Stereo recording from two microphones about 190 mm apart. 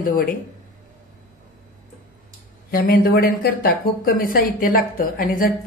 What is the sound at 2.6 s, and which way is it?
A woman's voice, 50° left (ahead or behind).